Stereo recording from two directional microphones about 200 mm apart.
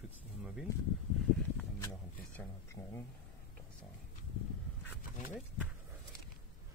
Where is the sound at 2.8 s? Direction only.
20° left (ahead or behind).